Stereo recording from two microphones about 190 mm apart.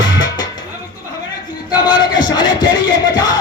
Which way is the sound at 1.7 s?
20° left (ahead or behind).